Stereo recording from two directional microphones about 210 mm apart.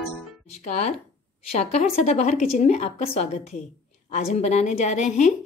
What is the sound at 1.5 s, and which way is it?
Speech, 30° left (ahead or behind).